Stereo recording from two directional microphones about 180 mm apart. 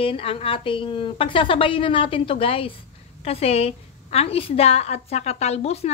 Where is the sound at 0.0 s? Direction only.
30° left (ahead or behind).